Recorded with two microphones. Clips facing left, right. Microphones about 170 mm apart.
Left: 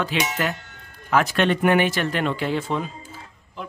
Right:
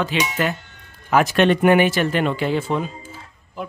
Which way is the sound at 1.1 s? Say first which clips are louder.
Right 4 dB; 15° right (ahead or behind).